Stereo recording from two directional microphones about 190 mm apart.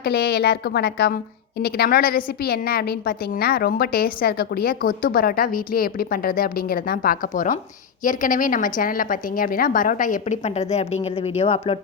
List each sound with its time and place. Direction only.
0.0 s a woman's voice: 55° left (ahead or behind); by 11.8 s 30° left (ahead or behind)